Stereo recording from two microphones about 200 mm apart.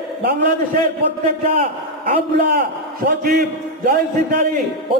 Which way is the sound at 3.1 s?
50° right (ahead or behind).